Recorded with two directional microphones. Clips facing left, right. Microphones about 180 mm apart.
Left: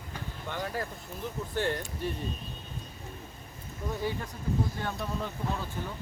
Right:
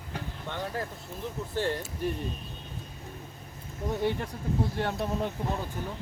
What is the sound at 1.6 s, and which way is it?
Speech, centre (ahead or behind).